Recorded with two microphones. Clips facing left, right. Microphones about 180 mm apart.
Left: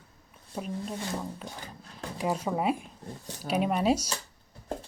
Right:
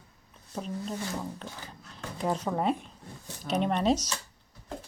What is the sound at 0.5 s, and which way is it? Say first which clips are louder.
Speech: even; 10° left (ahead or behind).